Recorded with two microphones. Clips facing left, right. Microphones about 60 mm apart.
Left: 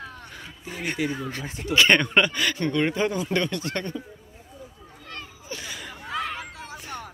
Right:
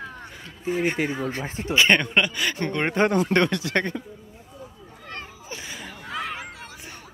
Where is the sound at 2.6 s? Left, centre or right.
Right.